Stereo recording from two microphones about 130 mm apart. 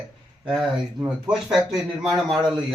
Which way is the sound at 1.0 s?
5° right (ahead or behind).